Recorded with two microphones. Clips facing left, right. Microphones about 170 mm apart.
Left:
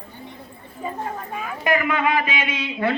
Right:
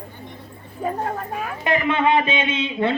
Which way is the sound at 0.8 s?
45° right (ahead or behind).